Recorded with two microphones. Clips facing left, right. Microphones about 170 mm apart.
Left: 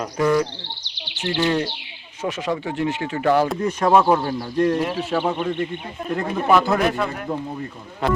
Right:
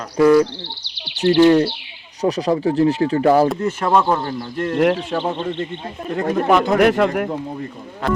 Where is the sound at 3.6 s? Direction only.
15° left (ahead or behind).